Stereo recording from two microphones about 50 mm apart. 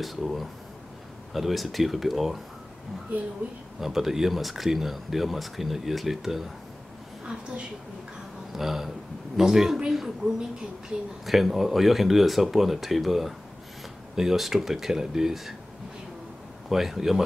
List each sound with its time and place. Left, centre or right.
0.0 s speech: centre
3.8 s speech: centre
8.5 s speech: centre
16.6 s speech: centre